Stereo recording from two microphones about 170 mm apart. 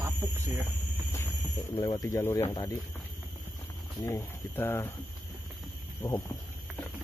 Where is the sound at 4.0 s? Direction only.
15° left (ahead or behind).